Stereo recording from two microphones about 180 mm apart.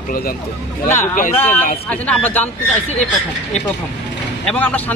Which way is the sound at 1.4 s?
10° left (ahead or behind).